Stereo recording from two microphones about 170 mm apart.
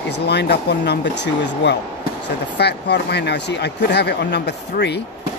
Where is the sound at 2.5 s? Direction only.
75° left (ahead or behind).